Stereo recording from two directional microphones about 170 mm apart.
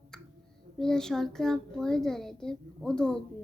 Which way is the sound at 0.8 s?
5° left (ahead or behind).